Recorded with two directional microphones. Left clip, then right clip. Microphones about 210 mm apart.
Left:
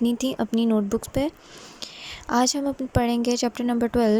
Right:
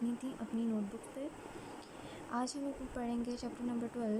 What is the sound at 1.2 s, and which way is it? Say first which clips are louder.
A woman's voice: left 16 dB; 45° left (ahead or behind).